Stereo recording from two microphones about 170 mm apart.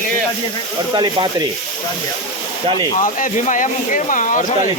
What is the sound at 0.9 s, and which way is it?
Speech, 25° right (ahead or behind).